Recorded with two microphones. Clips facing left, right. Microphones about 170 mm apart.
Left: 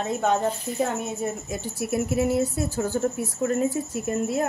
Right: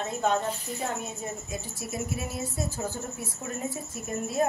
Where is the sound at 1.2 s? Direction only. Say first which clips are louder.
Left 7 dB; 65° left (ahead or behind).